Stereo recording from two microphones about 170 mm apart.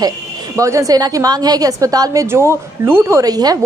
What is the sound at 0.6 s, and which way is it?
A woman's voice, 20° right (ahead or behind).